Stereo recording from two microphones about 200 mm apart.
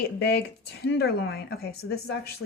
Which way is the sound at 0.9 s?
55° left (ahead or behind).